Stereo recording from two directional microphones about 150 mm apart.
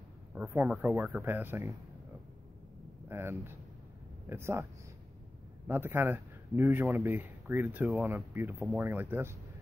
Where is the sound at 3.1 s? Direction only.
15° right (ahead or behind).